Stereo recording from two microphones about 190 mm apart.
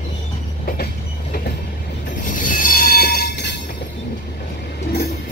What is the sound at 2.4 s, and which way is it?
Train, 45° left (ahead or behind).